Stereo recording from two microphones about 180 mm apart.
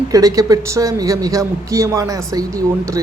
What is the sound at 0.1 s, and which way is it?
A man's voice, 20° right (ahead or behind).